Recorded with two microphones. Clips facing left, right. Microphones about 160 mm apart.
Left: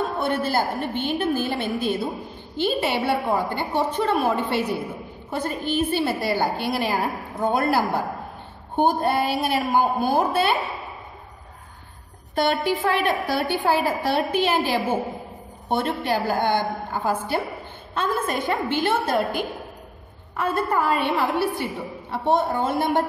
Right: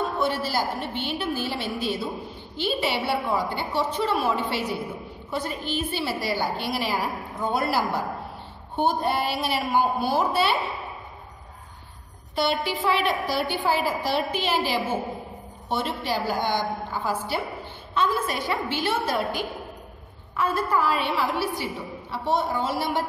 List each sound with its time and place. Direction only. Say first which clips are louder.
0.2 s a woman's voice: left 4 dB; 50° left (ahead or behind)
8.7 s a woman's voice: left 3 dB; 50° left (ahead or behind)
12.4 s a woman's voice: left 3 dB; 50° left (ahead or behind)